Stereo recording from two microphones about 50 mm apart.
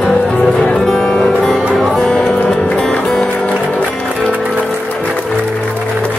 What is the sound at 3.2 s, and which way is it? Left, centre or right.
Music, left.